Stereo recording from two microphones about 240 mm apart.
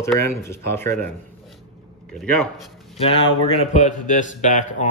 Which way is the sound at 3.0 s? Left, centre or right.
Left.